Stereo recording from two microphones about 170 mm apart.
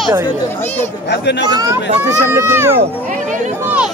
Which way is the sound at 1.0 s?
90° left.